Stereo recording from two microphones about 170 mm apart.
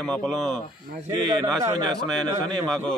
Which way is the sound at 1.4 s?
15° right (ahead or behind).